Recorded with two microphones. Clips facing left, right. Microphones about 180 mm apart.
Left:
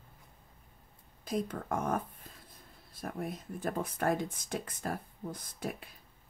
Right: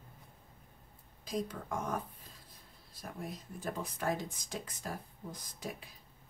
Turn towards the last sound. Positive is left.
turn(degrees=55)  # may be behind; listen again after turning